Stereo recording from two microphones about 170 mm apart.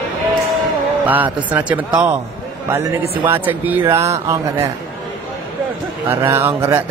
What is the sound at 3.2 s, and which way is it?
A man's voice, 10° right (ahead or behind).